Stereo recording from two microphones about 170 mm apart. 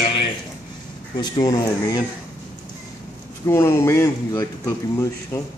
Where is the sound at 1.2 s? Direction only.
25° left (ahead or behind).